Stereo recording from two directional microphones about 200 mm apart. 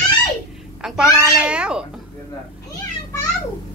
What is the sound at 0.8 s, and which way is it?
A woman's voice, 5° right (ahead or behind).